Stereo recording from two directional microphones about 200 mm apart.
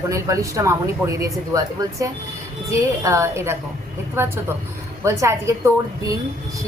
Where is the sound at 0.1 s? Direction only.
15° right (ahead or behind).